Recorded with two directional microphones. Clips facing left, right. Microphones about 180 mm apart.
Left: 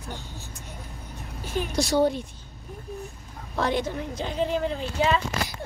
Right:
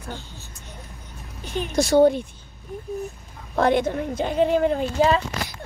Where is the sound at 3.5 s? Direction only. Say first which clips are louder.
Right 6 dB; 55° right (ahead or behind).